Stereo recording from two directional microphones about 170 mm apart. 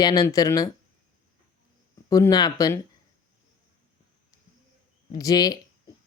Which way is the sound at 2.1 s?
20° left (ahead or behind).